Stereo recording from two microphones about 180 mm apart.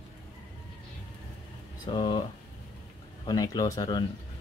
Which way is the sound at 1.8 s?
25° left (ahead or behind).